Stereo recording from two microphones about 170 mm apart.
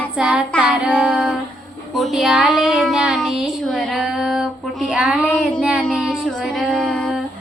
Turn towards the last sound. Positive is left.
turn(degrees=5)  # may be behind; listen again after turning